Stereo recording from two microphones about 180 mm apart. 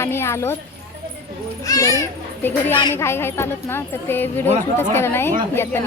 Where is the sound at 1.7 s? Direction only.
20° left (ahead or behind).